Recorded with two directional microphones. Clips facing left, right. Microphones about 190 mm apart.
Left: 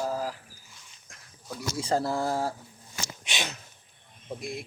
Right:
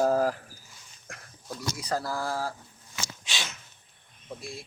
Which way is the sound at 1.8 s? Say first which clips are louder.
Left 5 dB; 25° left (ahead or behind).